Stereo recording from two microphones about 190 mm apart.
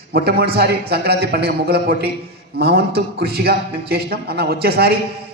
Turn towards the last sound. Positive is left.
turn(degrees=-55)  # may be behind; listen again after turning